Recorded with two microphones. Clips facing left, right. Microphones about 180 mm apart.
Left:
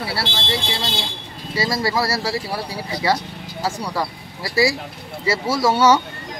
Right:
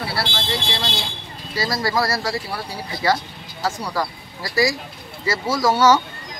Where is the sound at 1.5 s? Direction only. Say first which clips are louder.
Left 1 dB; 25° left (ahead or behind).